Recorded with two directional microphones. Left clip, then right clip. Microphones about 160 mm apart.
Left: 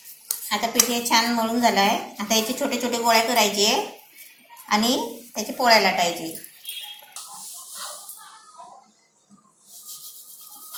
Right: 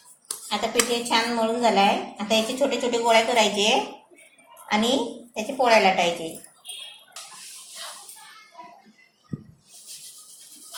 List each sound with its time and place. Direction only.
0.4 s speech: 30° right (ahead or behind)